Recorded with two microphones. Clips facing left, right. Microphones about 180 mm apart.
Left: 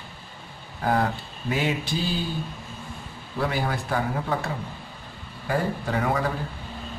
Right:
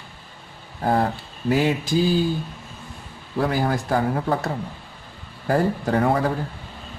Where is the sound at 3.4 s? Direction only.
40° right (ahead or behind).